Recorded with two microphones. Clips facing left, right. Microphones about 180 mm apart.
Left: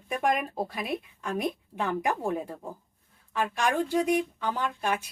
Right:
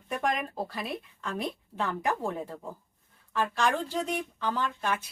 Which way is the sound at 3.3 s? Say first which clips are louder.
Left 1 dB; 15° left (ahead or behind).